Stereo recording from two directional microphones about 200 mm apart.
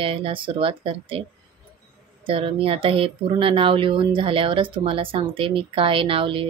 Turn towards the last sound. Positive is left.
turn(degrees=-25)  # may be behind; listen again after turning